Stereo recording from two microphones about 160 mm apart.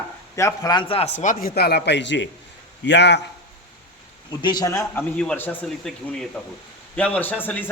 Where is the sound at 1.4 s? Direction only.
80° left.